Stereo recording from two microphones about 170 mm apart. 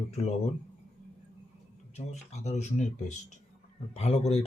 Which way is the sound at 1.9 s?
40° left (ahead or behind).